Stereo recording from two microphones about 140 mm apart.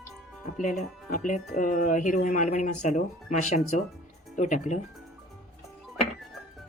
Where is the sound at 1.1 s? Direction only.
70° left (ahead or behind).